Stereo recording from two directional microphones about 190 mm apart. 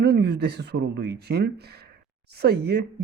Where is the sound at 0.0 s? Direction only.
60° right (ahead or behind).